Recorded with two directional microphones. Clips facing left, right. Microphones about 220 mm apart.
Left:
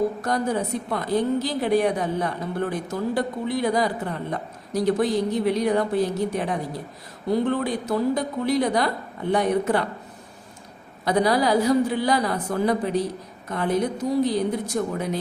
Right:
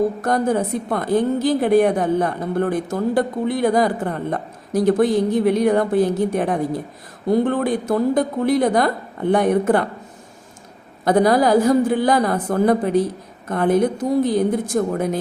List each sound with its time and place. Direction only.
0.2 s a woman's voice: 50° right (ahead or behind)
11.0 s a woman's voice: 50° right (ahead or behind)